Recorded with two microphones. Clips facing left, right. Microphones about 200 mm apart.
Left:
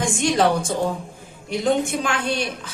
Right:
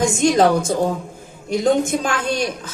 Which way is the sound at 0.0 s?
40° right (ahead or behind).